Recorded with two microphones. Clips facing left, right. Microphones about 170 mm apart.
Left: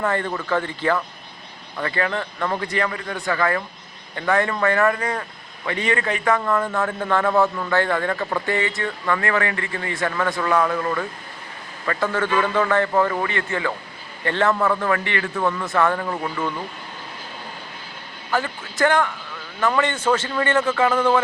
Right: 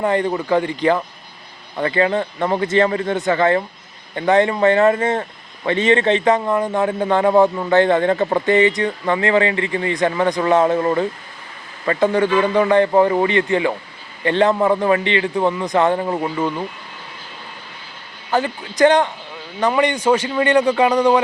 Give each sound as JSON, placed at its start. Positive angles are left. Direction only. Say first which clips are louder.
{"t": 0.0, "sound": "a man's voice", "louder": "right 5 dB", "side_deg": -15}
{"t": 8.4, "sound": "a man's voice", "louder": "right 8 dB", "side_deg": -20}
{"t": 18.3, "sound": "a man's voice", "louder": "right 5 dB", "side_deg": -20}